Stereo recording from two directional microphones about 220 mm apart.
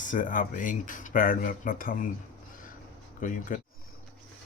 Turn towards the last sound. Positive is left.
turn(degrees=40)  # may be behind; listen again after turning